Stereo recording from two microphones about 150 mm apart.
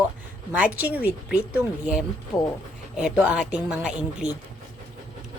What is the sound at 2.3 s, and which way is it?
Speech, 15° left (ahead or behind).